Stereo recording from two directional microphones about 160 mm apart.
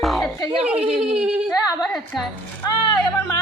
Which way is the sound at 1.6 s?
25° left (ahead or behind).